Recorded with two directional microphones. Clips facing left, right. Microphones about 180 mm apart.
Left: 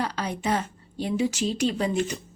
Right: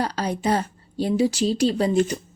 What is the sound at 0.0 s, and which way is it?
A woman's voice, 40° right (ahead or behind).